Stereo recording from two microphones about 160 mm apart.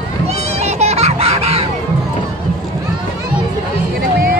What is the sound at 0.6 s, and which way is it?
Music, 45° right (ahead or behind).